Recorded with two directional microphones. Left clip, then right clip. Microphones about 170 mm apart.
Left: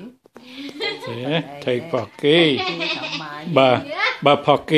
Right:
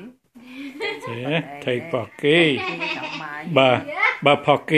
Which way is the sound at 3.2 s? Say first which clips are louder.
Left 1 dB; 55° left (ahead or behind).